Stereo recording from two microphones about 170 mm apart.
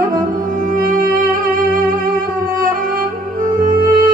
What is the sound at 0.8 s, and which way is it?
Music, 55° right (ahead or behind).